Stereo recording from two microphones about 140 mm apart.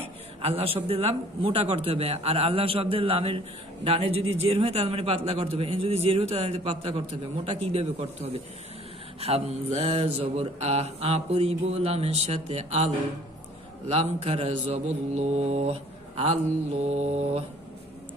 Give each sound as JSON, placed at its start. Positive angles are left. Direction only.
{"t": 0.4, "sound": "a man's voice", "side_deg": -45}